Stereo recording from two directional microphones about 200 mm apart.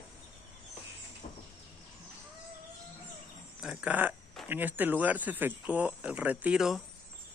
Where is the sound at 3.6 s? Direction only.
5° right (ahead or behind).